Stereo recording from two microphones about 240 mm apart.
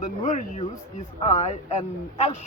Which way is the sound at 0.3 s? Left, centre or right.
Left.